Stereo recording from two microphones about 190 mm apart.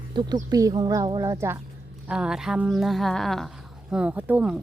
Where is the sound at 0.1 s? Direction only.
25° right (ahead or behind).